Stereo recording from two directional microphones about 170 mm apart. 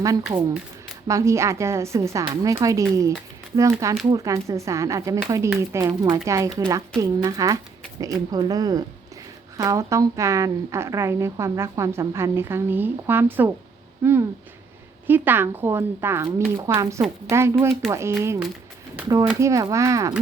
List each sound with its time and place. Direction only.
0.2 s a woman's voice: 5° right (ahead or behind)
1.0 s a woman's voice: 20° right (ahead or behind)